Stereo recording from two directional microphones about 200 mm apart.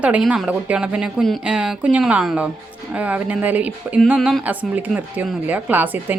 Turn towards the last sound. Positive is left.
turn(degrees=-10)  # may be behind; listen again after turning